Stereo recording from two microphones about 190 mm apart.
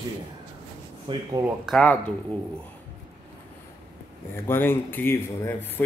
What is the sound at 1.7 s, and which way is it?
Speech, 5° left (ahead or behind).